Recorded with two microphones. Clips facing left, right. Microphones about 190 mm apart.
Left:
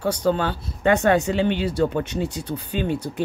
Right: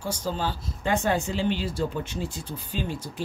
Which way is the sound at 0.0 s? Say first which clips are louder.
Left 8 dB; 65° left (ahead or behind).